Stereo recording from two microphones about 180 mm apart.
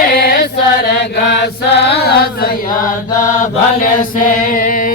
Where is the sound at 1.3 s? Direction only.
70° left (ahead or behind).